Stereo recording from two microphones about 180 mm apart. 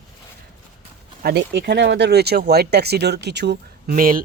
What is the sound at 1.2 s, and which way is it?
Speech, 65° right (ahead or behind).